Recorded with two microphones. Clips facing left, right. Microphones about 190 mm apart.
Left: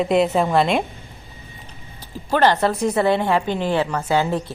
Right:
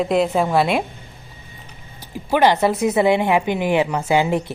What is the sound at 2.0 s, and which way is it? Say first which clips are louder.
Speech: right 1 dB; 10° right (ahead or behind).